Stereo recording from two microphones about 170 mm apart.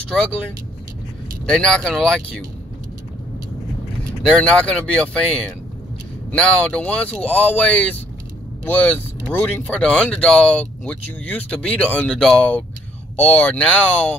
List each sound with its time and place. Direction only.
0.0 s speech: 5° left (ahead or behind)
1.4 s speech: 5° left (ahead or behind)
4.2 s speech: 5° left (ahead or behind)
6.3 s speech: 5° left (ahead or behind)